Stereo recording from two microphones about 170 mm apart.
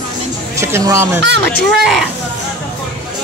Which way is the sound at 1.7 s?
Centre (ahead or behind).